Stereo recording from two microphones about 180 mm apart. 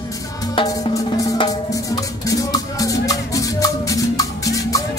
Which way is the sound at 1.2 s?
25° left (ahead or behind).